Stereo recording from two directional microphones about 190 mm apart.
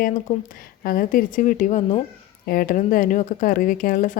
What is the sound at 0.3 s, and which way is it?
Speech, 45° left (ahead or behind).